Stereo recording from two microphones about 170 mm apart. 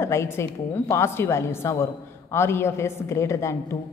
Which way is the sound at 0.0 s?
15° left (ahead or behind).